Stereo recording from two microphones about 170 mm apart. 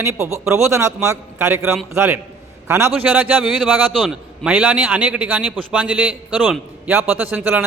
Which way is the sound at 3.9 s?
Centre (ahead or behind).